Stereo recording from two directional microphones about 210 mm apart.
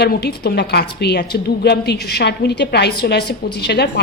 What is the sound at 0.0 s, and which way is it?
A woman's voice, 50° left (ahead or behind).